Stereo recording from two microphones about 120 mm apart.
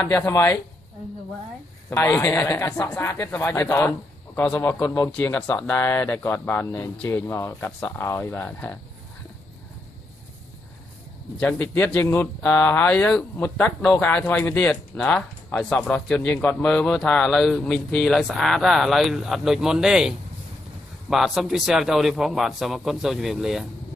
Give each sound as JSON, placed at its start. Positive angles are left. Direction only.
{"t": 0.0, "sound": "a man's voice", "side_deg": 15}
{"t": 1.9, "sound": "a man's voice", "side_deg": 20}
{"t": 4.4, "sound": "a man's voice", "side_deg": 10}
{"t": 11.3, "sound": "speech", "side_deg": 15}